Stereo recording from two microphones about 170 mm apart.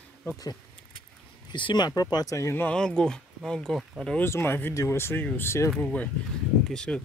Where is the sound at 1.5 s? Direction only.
25° left (ahead or behind).